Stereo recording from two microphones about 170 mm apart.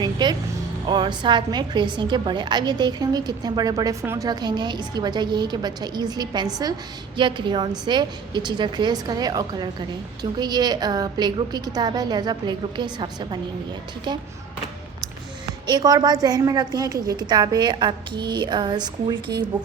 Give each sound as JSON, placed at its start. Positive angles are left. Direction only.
{"t": 0.0, "sound": "music", "side_deg": -25}
{"t": 0.9, "sound": "a woman's voice", "side_deg": -25}
{"t": 15.6, "sound": "a woman's voice", "side_deg": -25}